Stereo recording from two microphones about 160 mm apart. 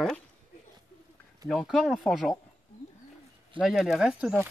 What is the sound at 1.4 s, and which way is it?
Speech, centre (ahead or behind).